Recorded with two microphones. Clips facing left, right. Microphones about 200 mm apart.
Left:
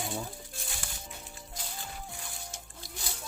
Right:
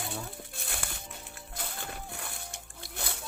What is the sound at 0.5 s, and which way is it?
Music, 60° right (ahead or behind).